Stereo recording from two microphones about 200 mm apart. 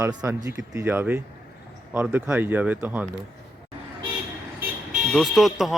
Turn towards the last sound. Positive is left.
turn(degrees=0)  # may be behind; listen again after turning